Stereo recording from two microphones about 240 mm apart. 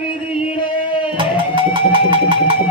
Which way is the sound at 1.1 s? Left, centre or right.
Right.